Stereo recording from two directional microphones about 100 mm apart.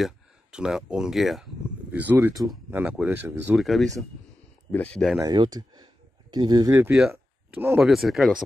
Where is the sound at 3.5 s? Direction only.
Centre (ahead or behind).